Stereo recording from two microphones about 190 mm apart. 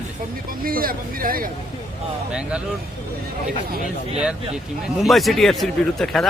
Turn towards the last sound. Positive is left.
turn(degrees=0)  # may be behind; listen again after turning